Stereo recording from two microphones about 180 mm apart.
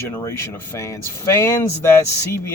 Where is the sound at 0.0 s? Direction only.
15° left (ahead or behind).